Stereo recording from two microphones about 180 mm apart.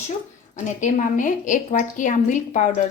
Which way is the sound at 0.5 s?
45° left (ahead or behind).